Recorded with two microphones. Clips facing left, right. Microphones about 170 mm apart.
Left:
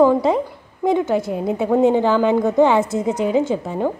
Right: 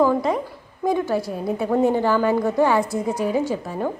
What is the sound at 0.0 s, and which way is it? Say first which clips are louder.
A woman's voice: left 4 dB; 25° left (ahead or behind).